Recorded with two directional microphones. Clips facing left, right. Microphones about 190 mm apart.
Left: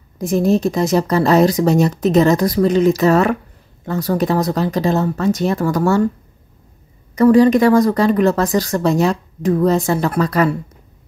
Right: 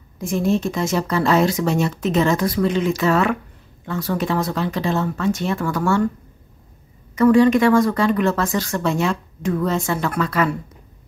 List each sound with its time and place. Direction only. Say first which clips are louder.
0.2 s speech: left 5 dB; 40° left (ahead or behind)
7.2 s speech: left 3 dB; 35° left (ahead or behind)